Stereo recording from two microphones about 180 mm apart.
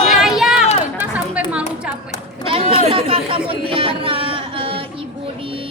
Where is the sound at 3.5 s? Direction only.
30° right (ahead or behind).